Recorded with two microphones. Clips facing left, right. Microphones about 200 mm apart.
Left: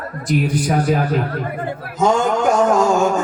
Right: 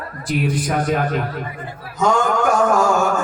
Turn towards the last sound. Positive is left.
turn(degrees=20)  # may be behind; listen again after turning